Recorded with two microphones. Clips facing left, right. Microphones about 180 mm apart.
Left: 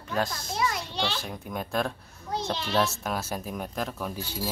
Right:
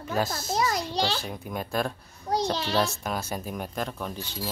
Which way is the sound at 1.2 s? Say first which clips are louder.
Right 1 dB; centre (ahead or behind).